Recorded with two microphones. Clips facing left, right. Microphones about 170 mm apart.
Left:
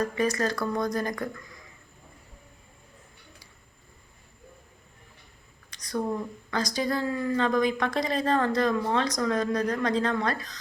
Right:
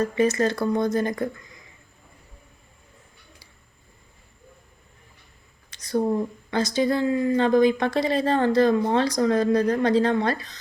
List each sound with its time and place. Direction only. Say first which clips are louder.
0.0 s a woman's voice: right 5 dB; 25° right (ahead or behind)
5.7 s a sound: right 6 dB; 30° right (ahead or behind)
6.5 s a woman's voice: right 5 dB; 25° right (ahead or behind)